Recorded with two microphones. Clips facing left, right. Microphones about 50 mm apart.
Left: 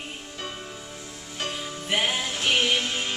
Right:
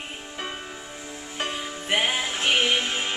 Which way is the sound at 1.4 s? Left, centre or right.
Centre.